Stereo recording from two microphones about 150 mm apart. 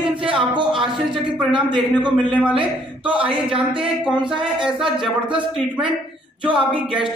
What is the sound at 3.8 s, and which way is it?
A man's voice, 5° right (ahead or behind).